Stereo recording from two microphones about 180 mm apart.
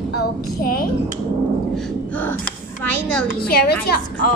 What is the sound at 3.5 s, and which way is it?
Speech, 60° left (ahead or behind).